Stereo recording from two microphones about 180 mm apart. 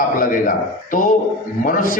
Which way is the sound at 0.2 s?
50° left (ahead or behind).